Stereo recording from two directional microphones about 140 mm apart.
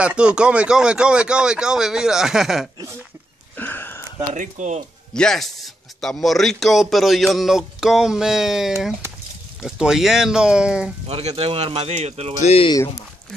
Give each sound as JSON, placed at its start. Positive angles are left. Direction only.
{"t": 0.0, "sound": "speech", "side_deg": -10}
{"t": 3.5, "sound": "a sound", "side_deg": 15}
{"t": 4.3, "sound": "speech", "side_deg": -60}
{"t": 5.1, "sound": "speech", "side_deg": 5}
{"t": 11.1, "sound": "speech", "side_deg": -45}
{"t": 12.4, "sound": "speech", "side_deg": 45}
{"t": 12.7, "sound": "speech", "side_deg": 25}